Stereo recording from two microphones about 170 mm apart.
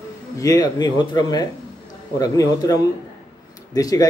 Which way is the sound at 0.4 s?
20° left (ahead or behind).